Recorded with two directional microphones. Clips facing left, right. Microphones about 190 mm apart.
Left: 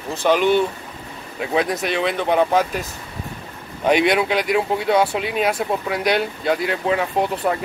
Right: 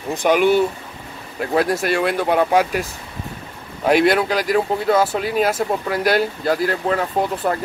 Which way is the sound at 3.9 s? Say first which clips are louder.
Right 1 dB; centre (ahead or behind).